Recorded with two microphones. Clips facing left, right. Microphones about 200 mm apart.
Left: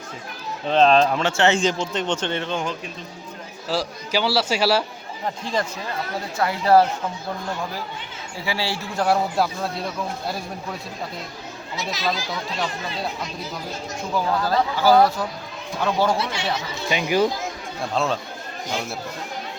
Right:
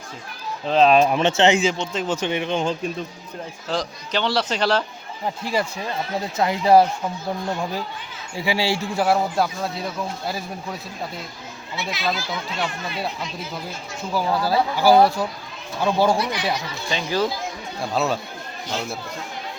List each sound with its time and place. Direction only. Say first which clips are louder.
0.7 s a man's voice: even; 5° right (ahead or behind)
0.9 s speech: right 2 dB; 15° right (ahead or behind)
1.5 s speech: even; centre (ahead or behind)
3.7 s a man's voice: left 1 dB; 5° left (ahead or behind)
5.2 s speech: right 1 dB; 10° right (ahead or behind)
6.3 s speech: right 1 dB; 20° right (ahead or behind)
8.4 s speech: right 5 dB; 15° right (ahead or behind)
9.0 s a man's voice: left 1 dB; centre (ahead or behind)
11.8 s speech: even; 40° left (ahead or behind)
14.1 s speech: right 1 dB; 5° right (ahead or behind)
16.1 s speech: right 2 dB; 25° left (ahead or behind)
16.9 s a man's voice: left 3 dB; 15° left (ahead or behind)
17.9 s speech: right 1 dB; 5° right (ahead or behind)